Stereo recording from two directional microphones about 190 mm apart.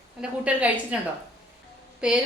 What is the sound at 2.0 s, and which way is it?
Speech, 5° right (ahead or behind).